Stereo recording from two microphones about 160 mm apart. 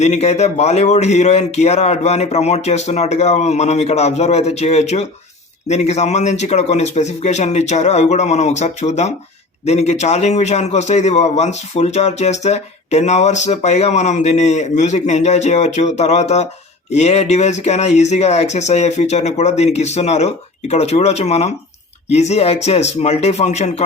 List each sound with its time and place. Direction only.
0.0 s a man's voice: 45° left (ahead or behind)